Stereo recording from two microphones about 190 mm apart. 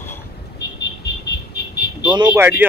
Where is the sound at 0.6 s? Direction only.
65° left (ahead or behind).